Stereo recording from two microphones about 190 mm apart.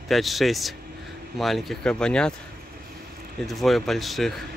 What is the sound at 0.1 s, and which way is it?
Speech, centre (ahead or behind).